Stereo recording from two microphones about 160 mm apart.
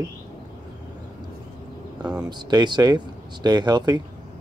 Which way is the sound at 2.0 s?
5° right (ahead or behind).